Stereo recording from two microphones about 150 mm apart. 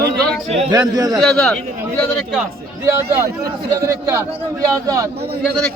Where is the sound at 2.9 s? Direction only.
20° right (ahead or behind).